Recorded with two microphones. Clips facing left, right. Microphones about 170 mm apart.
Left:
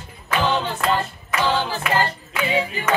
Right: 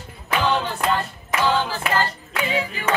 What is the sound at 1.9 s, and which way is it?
Music, 15° left (ahead or behind).